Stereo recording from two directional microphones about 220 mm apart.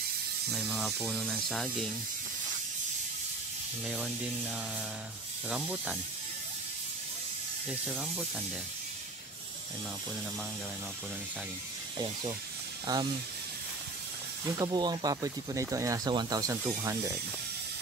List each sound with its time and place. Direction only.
0.5 s speech: centre (ahead or behind)
3.8 s speech: centre (ahead or behind)
5.5 s speech: 5° right (ahead or behind)
7.9 s speech: centre (ahead or behind)
14.6 s speech: 20° right (ahead or behind)